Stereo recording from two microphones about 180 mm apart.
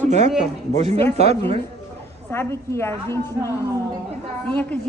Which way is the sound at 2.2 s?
15° left (ahead or behind).